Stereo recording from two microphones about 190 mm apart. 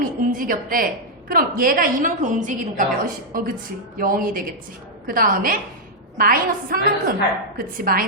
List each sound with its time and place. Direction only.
0.0 s a woman's voice: 45° right (ahead or behind)